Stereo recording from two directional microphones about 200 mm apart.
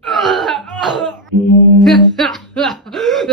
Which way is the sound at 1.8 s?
Centre (ahead or behind).